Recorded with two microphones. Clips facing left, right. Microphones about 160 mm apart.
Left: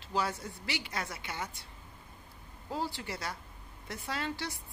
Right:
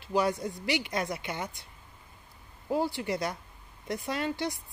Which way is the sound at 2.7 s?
15° right (ahead or behind).